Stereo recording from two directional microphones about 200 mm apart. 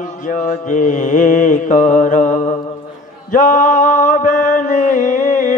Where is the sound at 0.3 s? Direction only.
40° left (ahead or behind).